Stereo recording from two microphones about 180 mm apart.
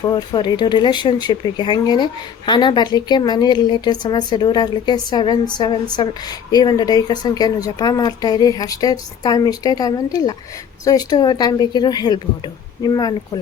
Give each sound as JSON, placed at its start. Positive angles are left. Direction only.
{"t": 0.0, "sound": "speech", "side_deg": 20}